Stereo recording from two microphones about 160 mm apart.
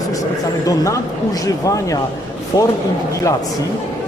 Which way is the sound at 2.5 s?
25° left (ahead or behind).